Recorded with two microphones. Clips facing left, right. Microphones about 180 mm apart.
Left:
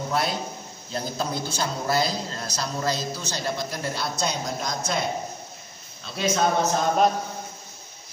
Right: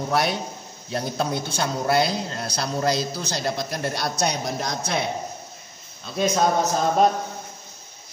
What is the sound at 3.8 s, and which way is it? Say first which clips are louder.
Speech: right 4 dB; 70° right (ahead or behind).